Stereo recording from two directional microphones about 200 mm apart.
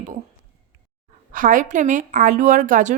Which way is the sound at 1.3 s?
40° right (ahead or behind).